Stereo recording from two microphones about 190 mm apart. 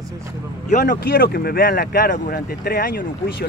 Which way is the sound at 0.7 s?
45° left (ahead or behind).